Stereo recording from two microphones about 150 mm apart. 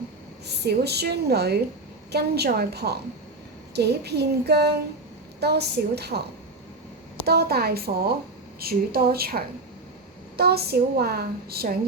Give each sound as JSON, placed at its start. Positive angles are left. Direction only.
{"t": 0.4, "sound": "a woman's voice", "side_deg": -90}
{"t": 7.3, "sound": "a woman's voice", "side_deg": -90}